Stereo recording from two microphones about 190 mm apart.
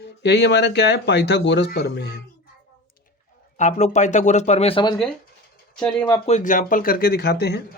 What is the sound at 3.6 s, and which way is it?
Speech, 40° left (ahead or behind).